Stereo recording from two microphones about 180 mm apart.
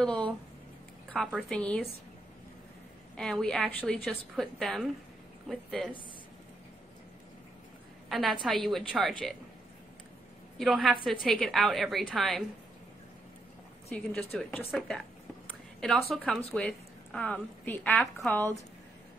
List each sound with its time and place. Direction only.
0.0 s a sound: 5° left (ahead or behind)
1.1 s a woman's voice: 5° left (ahead or behind)
3.2 s a woman's voice: 5° left (ahead or behind)
8.1 s a woman's voice: centre (ahead or behind)
10.6 s a woman's voice: centre (ahead or behind)
13.9 s a woman's voice: 10° left (ahead or behind)